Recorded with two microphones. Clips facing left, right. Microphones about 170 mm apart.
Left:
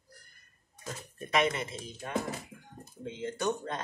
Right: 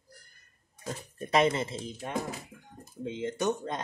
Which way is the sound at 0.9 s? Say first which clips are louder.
Right 4 dB; 35° right (ahead or behind).